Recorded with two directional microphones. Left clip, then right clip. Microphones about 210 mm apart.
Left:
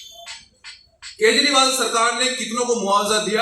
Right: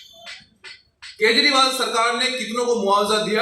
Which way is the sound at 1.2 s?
35° right (ahead or behind).